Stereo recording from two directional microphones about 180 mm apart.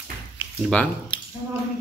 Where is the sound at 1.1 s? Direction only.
25° left (ahead or behind).